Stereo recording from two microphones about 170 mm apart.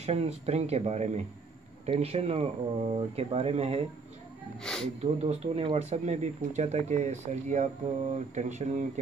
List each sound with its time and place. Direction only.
0.0 s speech: 40° right (ahead or behind)
4.6 s speech: 5° left (ahead or behind)
5.0 s speech: 35° right (ahead or behind)